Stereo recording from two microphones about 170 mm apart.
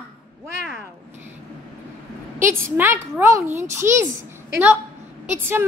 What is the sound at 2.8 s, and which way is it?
A child's voice, 15° right (ahead or behind).